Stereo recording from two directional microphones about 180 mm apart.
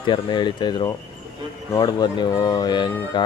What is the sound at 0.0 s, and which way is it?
Speech, 25° left (ahead or behind).